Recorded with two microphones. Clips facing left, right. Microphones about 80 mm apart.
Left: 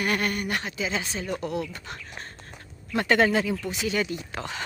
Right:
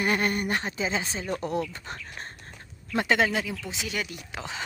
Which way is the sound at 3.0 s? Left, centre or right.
Centre.